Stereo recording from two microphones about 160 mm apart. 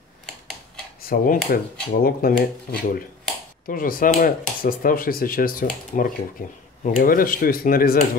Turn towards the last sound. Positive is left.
turn(degrees=65)  # may be behind; listen again after turning